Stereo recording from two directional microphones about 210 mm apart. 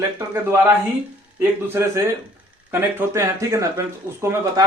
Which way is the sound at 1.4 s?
10° right (ahead or behind).